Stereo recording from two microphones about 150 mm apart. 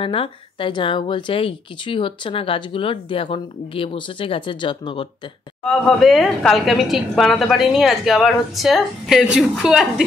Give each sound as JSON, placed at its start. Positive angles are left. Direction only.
{"t": 0.0, "sound": "speech", "side_deg": 35}
{"t": 5.7, "sound": "a woman's voice", "side_deg": 0}